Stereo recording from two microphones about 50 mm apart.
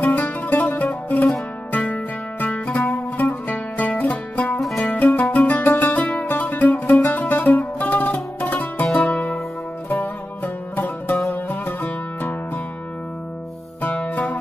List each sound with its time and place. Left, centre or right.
0.0 s music: left
4.6 s music: centre
4.8 s music: left
13.8 s music: left